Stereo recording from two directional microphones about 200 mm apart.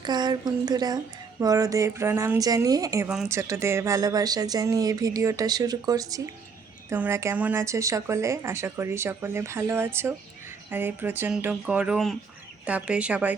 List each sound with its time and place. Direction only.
0.0 s a woman's voice: 20° right (ahead or behind)